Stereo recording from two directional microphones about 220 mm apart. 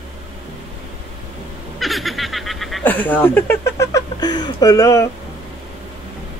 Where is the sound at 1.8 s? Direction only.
Centre (ahead or behind); by 5.1 s 15° left (ahead or behind).